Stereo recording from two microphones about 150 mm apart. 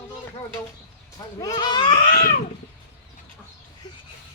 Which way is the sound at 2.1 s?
70° left (ahead or behind).